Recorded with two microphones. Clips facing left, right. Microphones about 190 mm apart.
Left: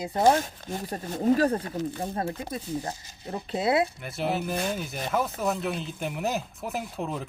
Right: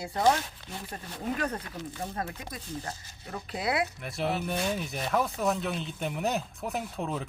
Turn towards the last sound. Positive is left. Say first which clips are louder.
# left 1 dB
turn(degrees=0)  # may be behind; listen again after turning